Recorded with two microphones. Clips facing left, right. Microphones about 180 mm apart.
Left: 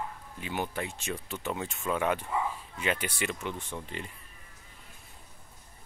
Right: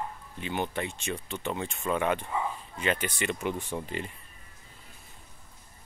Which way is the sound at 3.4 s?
10° right (ahead or behind).